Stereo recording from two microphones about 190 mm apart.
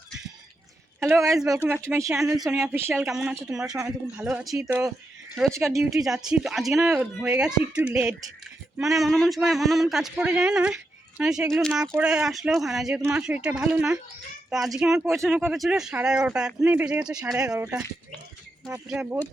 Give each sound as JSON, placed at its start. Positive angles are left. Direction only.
{"t": 0.9, "sound": "speech", "side_deg": -15}
{"t": 2.1, "sound": "speech", "side_deg": -5}
{"t": 2.4, "sound": "speech", "side_deg": -15}
{"t": 3.7, "sound": "speech", "side_deg": -15}
{"t": 4.2, "sound": "speech", "side_deg": -5}
{"t": 6.7, "sound": "speech", "side_deg": -10}
{"t": 18.9, "sound": "speech", "side_deg": -5}